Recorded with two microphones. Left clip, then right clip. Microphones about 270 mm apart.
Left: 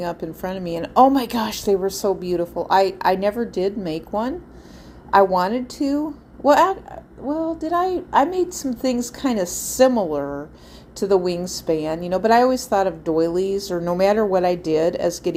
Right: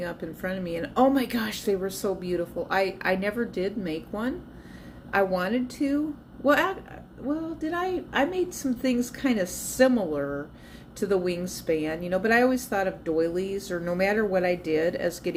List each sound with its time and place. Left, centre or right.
0.0 s a woman's voice: left
11.0 s a woman's voice: left